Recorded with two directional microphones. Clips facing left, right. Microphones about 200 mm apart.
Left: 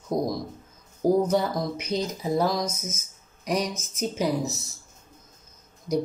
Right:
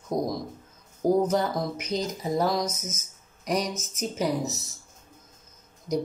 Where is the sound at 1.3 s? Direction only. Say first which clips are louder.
Left 1 dB; centre (ahead or behind).